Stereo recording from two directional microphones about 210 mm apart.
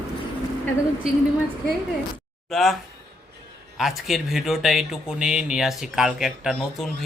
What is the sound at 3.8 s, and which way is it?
Speech, centre (ahead or behind).